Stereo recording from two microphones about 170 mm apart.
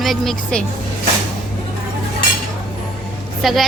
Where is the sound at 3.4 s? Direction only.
Centre (ahead or behind).